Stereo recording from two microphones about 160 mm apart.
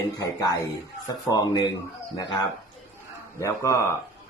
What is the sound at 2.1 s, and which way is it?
Speech, 25° left (ahead or behind).